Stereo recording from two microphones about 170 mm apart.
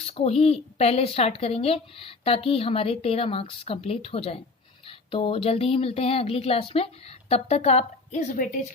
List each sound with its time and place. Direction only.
0.1 s a woman's voice: 40° left (ahead or behind)